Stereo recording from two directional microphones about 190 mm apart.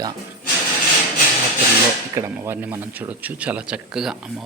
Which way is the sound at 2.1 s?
15° right (ahead or behind).